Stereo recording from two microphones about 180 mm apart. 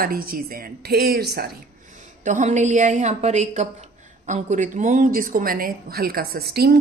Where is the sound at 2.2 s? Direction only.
45° right (ahead or behind).